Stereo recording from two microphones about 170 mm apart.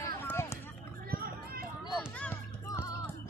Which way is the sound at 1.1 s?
60° right (ahead or behind).